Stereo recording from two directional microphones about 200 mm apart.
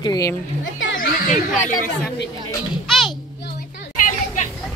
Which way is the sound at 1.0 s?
45° left (ahead or behind).